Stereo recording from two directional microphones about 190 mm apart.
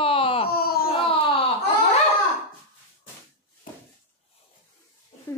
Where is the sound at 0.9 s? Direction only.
30° left (ahead or behind).